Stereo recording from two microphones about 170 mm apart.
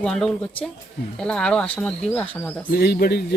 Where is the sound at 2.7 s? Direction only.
65° left (ahead or behind).